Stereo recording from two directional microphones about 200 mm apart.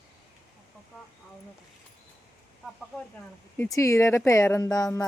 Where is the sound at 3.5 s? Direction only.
15° left (ahead or behind).